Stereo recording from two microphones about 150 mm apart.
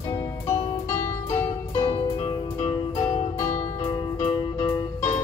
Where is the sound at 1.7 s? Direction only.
35° left (ahead or behind).